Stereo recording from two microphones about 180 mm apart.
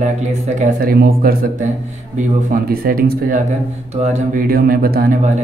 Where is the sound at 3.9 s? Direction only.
40° right (ahead or behind).